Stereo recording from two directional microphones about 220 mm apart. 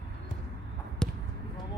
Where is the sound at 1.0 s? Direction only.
5° left (ahead or behind).